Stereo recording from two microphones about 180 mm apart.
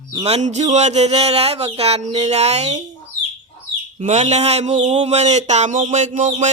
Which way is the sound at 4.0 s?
35° right (ahead or behind).